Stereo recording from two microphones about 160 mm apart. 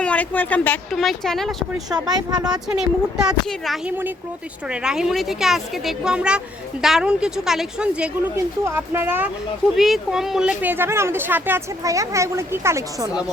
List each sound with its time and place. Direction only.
0.0 s speech: 10° left (ahead or behind)
1.9 s speech: 25° right (ahead or behind)
2.4 s speech: 5° right (ahead or behind)
9.7 s speech: centre (ahead or behind); by 13.1 s 15° right (ahead or behind)